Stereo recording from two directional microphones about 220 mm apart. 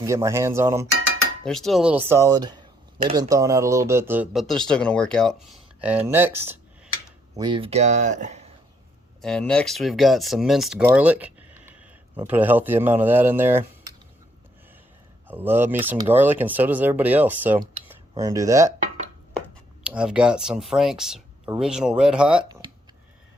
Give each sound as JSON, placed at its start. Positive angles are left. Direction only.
{"t": 0.0, "sound": "speech", "side_deg": -15}
{"t": 1.5, "sound": "speech", "side_deg": 0}
{"t": 2.2, "sound": "a sound", "side_deg": -20}
{"t": 3.2, "sound": "speech", "side_deg": -15}
{"t": 7.3, "sound": "speech", "side_deg": -20}
{"t": 9.2, "sound": "speech", "side_deg": 5}
{"t": 15.3, "sound": "speech", "side_deg": -10}
{"t": 19.8, "sound": "speech", "side_deg": -5}